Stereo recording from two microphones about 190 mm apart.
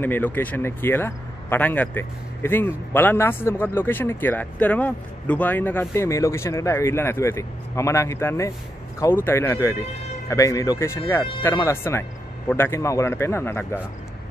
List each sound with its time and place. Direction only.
0.0 s speech: 10° left (ahead or behind)